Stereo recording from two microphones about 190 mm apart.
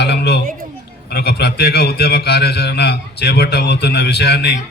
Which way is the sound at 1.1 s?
55° left (ahead or behind).